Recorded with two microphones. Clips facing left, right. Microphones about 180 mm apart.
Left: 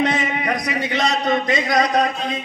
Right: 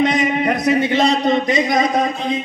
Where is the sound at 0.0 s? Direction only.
15° right (ahead or behind).